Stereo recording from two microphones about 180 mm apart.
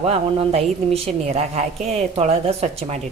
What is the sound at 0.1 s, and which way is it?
A woman's voice, 35° right (ahead or behind).